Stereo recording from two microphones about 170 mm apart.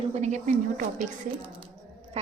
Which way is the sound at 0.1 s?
45° right (ahead or behind).